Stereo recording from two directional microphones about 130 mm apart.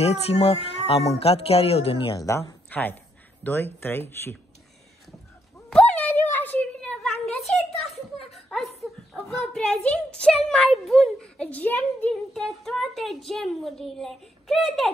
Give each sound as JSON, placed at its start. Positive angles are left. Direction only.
{"t": 0.0, "sound": "speech", "side_deg": 50}
{"t": 2.1, "sound": "speech", "side_deg": 25}
{"t": 2.7, "sound": "speech", "side_deg": 15}
{"t": 5.7, "sound": "a sound", "side_deg": 10}
{"t": 8.5, "sound": "a woman's voice", "side_deg": 5}
{"t": 12.4, "sound": "speech", "side_deg": 0}